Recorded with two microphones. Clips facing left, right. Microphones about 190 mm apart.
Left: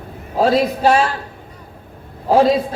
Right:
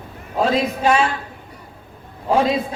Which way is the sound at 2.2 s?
35° left (ahead or behind).